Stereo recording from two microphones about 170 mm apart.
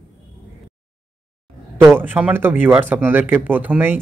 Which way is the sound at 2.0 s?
10° right (ahead or behind).